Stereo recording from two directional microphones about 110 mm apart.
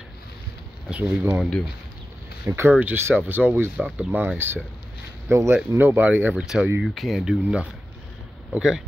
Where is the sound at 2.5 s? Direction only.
20° right (ahead or behind).